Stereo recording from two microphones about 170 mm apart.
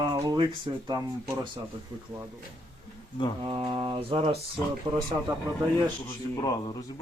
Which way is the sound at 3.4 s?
30° right (ahead or behind).